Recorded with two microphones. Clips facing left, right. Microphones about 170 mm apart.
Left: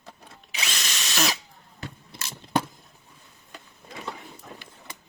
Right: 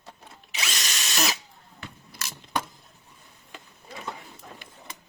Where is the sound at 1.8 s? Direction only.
30° left (ahead or behind).